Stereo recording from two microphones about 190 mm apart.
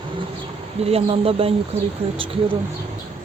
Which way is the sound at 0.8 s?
30° right (ahead or behind).